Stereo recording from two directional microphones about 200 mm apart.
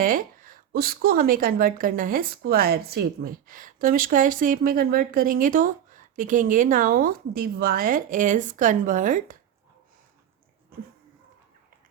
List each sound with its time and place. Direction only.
0.0 s speech: 45° right (ahead or behind)